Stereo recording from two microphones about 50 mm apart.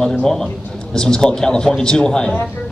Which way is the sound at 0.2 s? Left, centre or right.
Centre.